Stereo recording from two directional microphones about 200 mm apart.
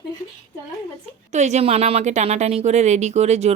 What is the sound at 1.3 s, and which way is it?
A woman's voice, 35° right (ahead or behind).